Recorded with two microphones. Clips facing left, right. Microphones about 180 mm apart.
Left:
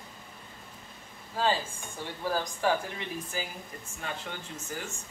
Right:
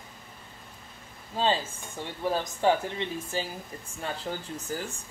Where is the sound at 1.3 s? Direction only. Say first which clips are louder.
Right 2 dB; 25° right (ahead or behind).